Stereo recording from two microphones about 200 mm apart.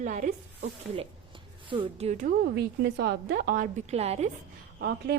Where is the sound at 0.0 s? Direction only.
40° right (ahead or behind).